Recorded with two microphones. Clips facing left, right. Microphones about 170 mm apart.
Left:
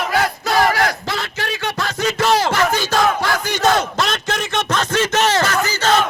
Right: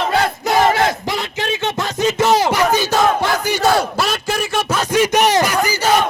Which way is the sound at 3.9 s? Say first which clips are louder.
Right 2 dB; 5° right (ahead or behind).